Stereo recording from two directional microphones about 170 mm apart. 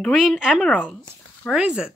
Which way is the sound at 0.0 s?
Centre (ahead or behind).